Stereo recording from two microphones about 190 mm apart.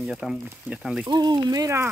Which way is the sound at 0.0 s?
5° right (ahead or behind).